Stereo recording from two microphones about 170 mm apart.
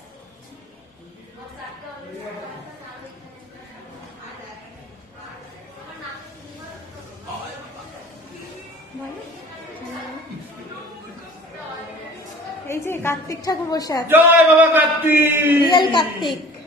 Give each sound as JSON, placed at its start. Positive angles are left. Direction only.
{"t": 12.6, "sound": "a woman's voice", "side_deg": 15}
{"t": 14.1, "sound": "a man's voice", "side_deg": -10}
{"t": 15.6, "sound": "a woman's voice", "side_deg": 30}